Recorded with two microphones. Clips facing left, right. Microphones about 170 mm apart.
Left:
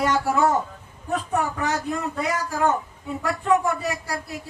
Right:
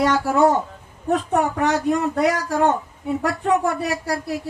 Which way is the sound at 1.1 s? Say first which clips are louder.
Right 5 dB; 70° right (ahead or behind).